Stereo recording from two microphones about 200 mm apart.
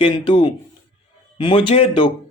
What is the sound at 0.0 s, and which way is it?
Speech, 25° left (ahead or behind).